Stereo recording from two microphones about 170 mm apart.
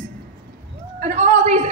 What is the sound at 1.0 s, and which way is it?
Speech, 45° right (ahead or behind).